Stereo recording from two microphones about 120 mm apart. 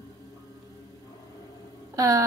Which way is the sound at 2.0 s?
30° right (ahead or behind).